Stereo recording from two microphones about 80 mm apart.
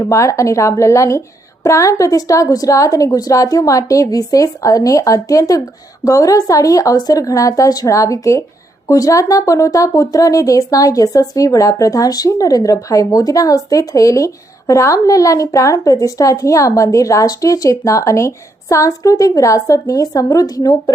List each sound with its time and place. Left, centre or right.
0.0 s speech: left